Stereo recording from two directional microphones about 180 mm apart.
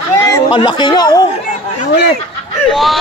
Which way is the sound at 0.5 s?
25° left (ahead or behind).